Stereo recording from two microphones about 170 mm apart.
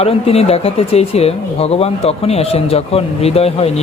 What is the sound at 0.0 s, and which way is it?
Speech, 35° left (ahead or behind).